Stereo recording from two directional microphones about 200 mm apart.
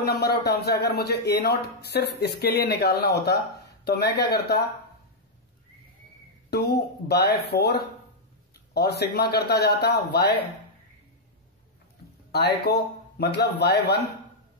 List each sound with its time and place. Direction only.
0.0 s speech: 50° left (ahead or behind)
6.5 s speech: 55° left (ahead or behind)
12.3 s speech: 55° left (ahead or behind)